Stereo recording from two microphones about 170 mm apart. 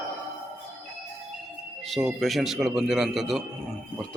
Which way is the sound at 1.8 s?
Centre (ahead or behind).